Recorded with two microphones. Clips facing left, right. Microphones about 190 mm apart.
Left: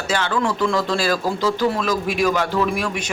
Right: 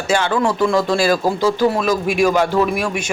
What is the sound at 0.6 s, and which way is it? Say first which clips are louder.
A man's voice: right 4 dB; 10° right (ahead or behind).